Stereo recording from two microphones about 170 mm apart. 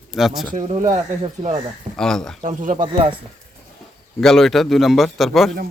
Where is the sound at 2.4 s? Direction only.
50° right (ahead or behind).